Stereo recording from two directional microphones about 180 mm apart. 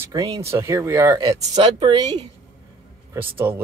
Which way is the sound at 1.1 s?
25° right (ahead or behind).